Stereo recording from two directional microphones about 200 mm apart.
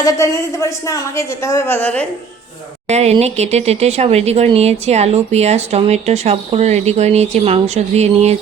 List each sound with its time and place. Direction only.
0.0 s a woman's voice: 15° left (ahead or behind)
2.8 s speech: 30° right (ahead or behind)